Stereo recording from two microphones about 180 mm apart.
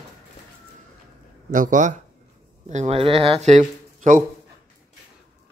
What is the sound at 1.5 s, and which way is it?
A man's voice, 45° right (ahead or behind).